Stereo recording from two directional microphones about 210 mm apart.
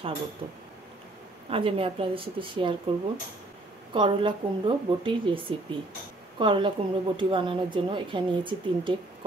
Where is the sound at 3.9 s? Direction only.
25° right (ahead or behind).